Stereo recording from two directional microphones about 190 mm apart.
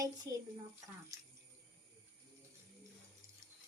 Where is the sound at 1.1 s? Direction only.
15° right (ahead or behind).